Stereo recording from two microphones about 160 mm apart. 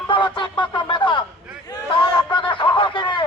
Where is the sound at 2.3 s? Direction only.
30° left (ahead or behind).